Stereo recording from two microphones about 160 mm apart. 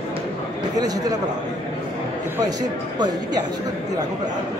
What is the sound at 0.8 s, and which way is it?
Speech, 25° right (ahead or behind).